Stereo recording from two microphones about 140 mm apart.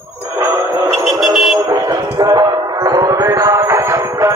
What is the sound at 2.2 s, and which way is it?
Music, 30° right (ahead or behind).